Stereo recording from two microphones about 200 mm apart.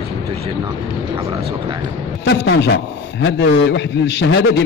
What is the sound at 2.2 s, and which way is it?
A man's voice, 60° left (ahead or behind).